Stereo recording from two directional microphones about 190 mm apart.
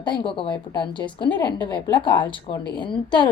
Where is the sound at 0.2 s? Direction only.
25° left (ahead or behind).